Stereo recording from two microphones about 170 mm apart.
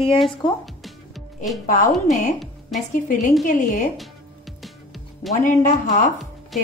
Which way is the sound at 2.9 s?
45° left (ahead or behind).